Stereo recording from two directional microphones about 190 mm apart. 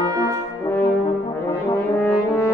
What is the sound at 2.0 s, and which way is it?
French horn, 10° left (ahead or behind).